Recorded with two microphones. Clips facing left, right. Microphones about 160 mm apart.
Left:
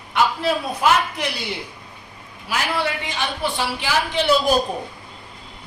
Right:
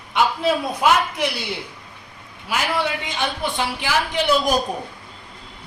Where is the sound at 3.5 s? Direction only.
15° right (ahead or behind).